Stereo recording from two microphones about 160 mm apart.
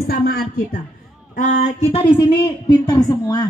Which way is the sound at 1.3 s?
50° left (ahead or behind).